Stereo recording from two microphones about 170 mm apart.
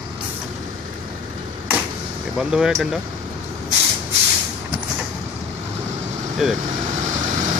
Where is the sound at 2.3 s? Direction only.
5° right (ahead or behind).